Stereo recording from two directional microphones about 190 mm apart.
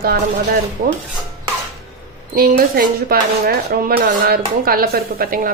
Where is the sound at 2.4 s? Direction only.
50° right (ahead or behind).